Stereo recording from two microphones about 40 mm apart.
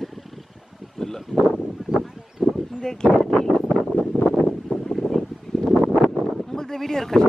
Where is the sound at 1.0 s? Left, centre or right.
Centre.